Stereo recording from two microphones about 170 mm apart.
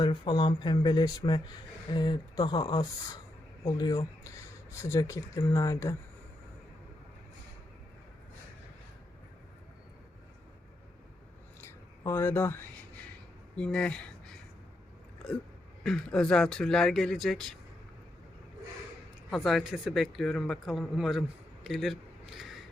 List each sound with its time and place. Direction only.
0.0 s speech: 25° left (ahead or behind)
12.0 s speech: 15° left (ahead or behind)
13.6 s speech: 5° left (ahead or behind)
19.3 s a man's voice: centre (ahead or behind)